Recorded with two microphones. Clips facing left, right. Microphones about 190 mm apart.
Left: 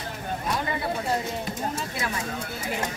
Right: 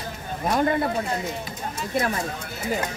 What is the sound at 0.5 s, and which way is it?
Speech, 50° right (ahead or behind).